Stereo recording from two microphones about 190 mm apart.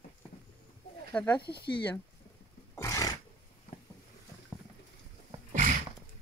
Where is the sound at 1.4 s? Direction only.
60° left (ahead or behind).